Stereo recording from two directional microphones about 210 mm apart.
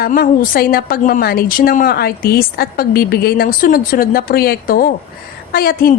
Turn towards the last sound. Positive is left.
turn(degrees=45)  # may be behind; listen again after turning